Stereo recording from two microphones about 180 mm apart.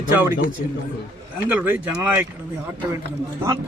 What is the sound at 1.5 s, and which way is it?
Speech, 10° right (ahead or behind).